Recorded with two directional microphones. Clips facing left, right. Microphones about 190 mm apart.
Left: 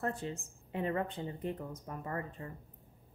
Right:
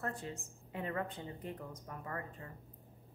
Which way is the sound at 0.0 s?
25° left (ahead or behind).